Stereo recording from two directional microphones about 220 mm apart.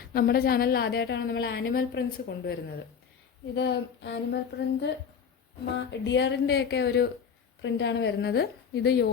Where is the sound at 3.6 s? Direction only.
50° left (ahead or behind).